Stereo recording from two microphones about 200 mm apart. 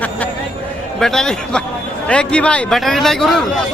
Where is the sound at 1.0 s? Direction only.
Centre (ahead or behind).